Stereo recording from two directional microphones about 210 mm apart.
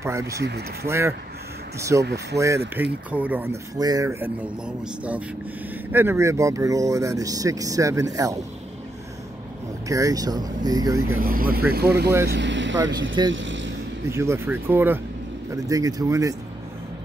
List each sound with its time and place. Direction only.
0.0 s speech: 15° right (ahead or behind)
0.4 s speech: 50° right (ahead or behind)
0.8 s speech: 15° right (ahead or behind)
9.8 s speech: 15° right (ahead or behind)
11.1 s speech: 45° right (ahead or behind); by 12.7 s 60° right (ahead or behind)
13.3 s vehicle: 60° right (ahead or behind)
14.0 s speech: 15° right (ahead or behind)